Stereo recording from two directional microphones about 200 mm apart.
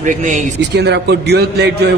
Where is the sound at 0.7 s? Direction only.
60° right (ahead or behind).